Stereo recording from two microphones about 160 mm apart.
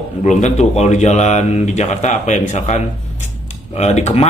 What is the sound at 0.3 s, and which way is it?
Speech, 45° left (ahead or behind).